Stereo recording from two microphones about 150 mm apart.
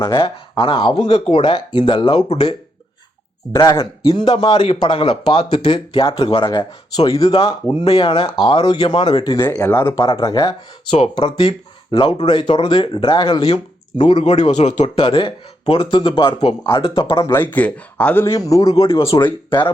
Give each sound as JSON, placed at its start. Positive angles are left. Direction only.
{"t": 0.1, "sound": "speech", "side_deg": 35}
{"t": 3.5, "sound": "a man's voice", "side_deg": 25}
{"t": 7.3, "sound": "a man's voice", "side_deg": 35}
{"t": 10.9, "sound": "speech", "side_deg": 35}
{"t": 17.3, "sound": "a man's voice", "side_deg": 10}
{"t": 18.9, "sound": "speech", "side_deg": 35}